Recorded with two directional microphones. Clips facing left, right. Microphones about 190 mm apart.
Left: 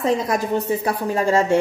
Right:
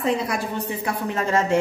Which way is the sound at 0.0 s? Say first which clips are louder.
Left 3 dB; 40° left (ahead or behind).